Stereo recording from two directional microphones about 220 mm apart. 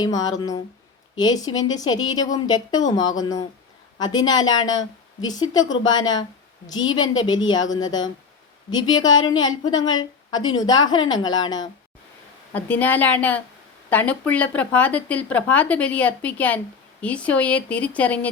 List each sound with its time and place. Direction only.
0.0 s a woman's voice: 20° left (ahead or behind)
12.5 s speech: 5° left (ahead or behind)